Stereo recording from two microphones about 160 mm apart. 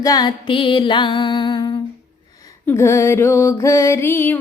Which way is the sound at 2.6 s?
15° left (ahead or behind).